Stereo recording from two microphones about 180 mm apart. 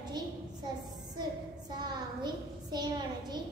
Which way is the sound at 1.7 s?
25° right (ahead or behind).